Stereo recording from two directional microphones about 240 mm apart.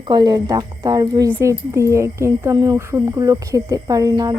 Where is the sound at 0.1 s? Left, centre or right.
Centre.